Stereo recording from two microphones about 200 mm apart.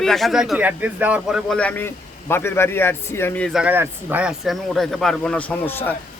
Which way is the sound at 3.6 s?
10° right (ahead or behind).